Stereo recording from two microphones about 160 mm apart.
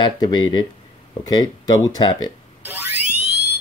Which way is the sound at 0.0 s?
25° left (ahead or behind).